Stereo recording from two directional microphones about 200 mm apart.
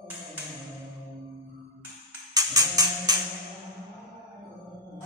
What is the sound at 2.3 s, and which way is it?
Music, 20° right (ahead or behind).